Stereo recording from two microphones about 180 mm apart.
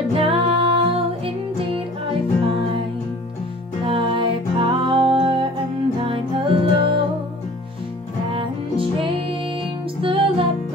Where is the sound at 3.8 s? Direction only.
30° right (ahead or behind).